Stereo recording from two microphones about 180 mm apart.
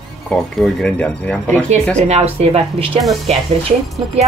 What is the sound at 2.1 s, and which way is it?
Speech, 35° right (ahead or behind).